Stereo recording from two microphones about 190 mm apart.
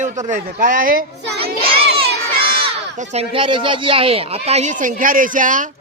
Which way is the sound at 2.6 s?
30° right (ahead or behind).